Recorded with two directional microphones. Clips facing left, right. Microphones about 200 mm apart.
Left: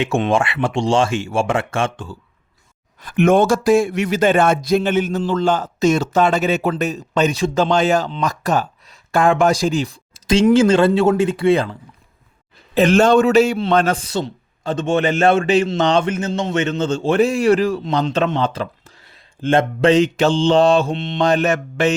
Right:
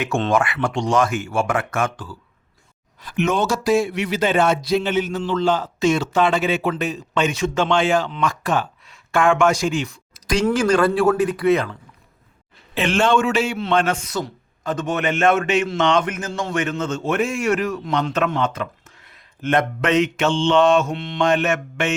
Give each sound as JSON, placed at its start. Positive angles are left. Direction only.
{"t": 0.3, "sound": "speech", "side_deg": 25}
{"t": 3.0, "sound": "speech", "side_deg": 50}
{"t": 12.7, "sound": "speech", "side_deg": 40}
{"t": 21.2, "sound": "speech", "side_deg": 35}